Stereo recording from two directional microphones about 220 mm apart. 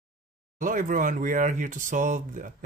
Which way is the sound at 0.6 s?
35° right (ahead or behind).